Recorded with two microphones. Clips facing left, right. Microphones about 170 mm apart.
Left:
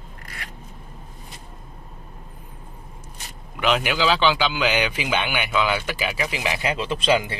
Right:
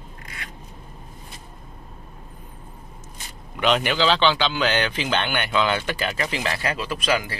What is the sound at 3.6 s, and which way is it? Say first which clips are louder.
Speech: right 1 dB; 5° left (ahead or behind).